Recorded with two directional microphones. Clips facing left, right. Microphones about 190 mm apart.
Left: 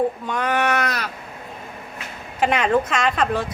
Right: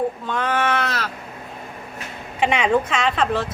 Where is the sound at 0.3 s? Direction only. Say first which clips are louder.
Even; 10° left (ahead or behind).